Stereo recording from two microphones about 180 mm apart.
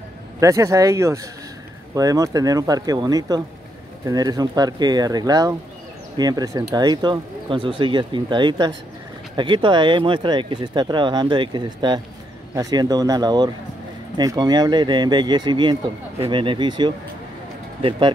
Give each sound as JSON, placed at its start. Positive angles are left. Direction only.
{"t": 0.4, "sound": "speech", "side_deg": -15}